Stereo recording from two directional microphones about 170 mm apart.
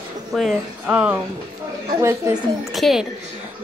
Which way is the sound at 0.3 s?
Centre (ahead or behind).